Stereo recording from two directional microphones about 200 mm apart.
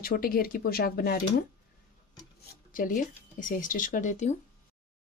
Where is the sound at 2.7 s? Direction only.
40° left (ahead or behind).